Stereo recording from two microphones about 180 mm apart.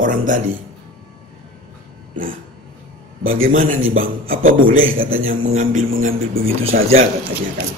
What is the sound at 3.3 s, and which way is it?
A man's voice, 50° right (ahead or behind).